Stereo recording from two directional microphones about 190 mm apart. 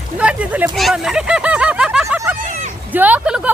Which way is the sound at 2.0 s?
10° right (ahead or behind).